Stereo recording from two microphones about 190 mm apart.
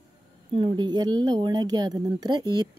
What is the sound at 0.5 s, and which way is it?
Speech, 25° right (ahead or behind).